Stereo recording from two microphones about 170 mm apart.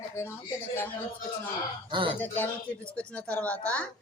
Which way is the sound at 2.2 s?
10° left (ahead or behind).